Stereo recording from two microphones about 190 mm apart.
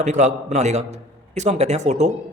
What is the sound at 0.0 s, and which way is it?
A man's voice, 35° right (ahead or behind).